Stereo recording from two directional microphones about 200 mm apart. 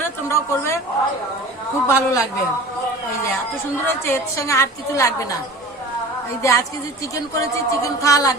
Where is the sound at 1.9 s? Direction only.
15° left (ahead or behind).